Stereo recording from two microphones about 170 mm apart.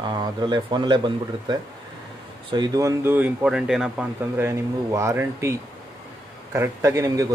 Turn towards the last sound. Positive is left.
turn(degrees=-20)  # may be behind; listen again after turning